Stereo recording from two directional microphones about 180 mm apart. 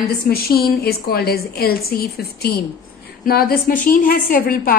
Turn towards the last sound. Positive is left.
turn(degrees=55)  # may be behind; listen again after turning